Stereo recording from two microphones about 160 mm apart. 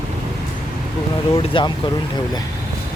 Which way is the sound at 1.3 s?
30° left (ahead or behind).